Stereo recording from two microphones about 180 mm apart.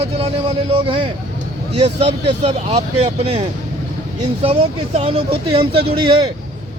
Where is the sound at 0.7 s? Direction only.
30° right (ahead or behind).